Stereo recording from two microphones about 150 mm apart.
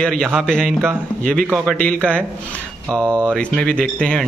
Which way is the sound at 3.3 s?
5° left (ahead or behind).